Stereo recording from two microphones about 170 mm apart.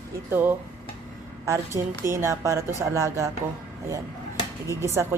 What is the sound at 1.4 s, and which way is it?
A woman's voice, 15° right (ahead or behind).